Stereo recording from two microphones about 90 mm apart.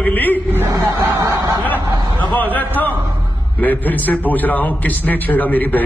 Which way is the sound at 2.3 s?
20° left (ahead or behind).